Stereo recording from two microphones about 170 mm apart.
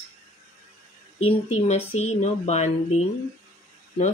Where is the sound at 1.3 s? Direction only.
35° left (ahead or behind).